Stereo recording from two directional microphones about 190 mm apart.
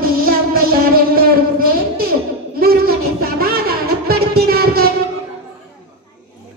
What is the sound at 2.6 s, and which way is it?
Music, 50° right (ahead or behind).